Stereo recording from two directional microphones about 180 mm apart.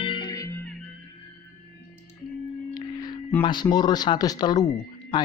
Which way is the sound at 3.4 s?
25° left (ahead or behind).